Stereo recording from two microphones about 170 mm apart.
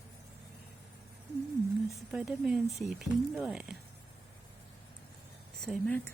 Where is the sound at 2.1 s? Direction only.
5° right (ahead or behind).